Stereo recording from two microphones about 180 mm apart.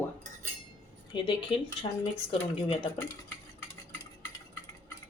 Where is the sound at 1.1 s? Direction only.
30° left (ahead or behind).